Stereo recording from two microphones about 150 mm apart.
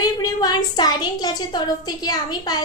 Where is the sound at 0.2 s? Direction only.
25° left (ahead or behind).